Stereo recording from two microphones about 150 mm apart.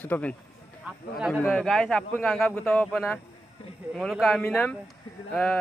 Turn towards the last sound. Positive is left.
turn(degrees=5)  # may be behind; listen again after turning